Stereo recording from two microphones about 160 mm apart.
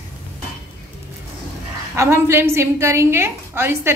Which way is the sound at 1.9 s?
15° right (ahead or behind).